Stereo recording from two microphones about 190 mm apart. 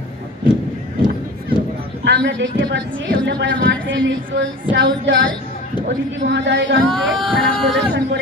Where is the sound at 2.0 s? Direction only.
65° right (ahead or behind).